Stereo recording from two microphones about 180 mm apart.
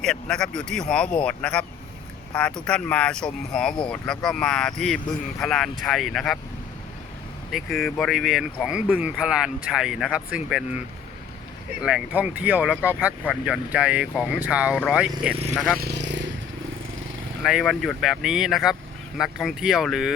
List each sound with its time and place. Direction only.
0.0 s speech: 5° left (ahead or behind)
7.5 s speech: centre (ahead or behind)
11.8 s speech: 5° right (ahead or behind)
15.8 s vehicle: 70° right (ahead or behind)
17.4 s speech: centre (ahead or behind)